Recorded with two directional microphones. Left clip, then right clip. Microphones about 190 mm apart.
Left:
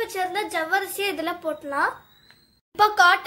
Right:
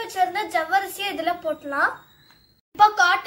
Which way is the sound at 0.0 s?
35° left (ahead or behind).